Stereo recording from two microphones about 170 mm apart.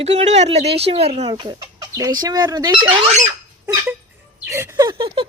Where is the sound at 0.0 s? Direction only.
40° right (ahead or behind).